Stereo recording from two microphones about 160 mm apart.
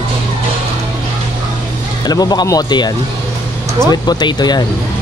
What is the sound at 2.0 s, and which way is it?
Speech, 25° left (ahead or behind).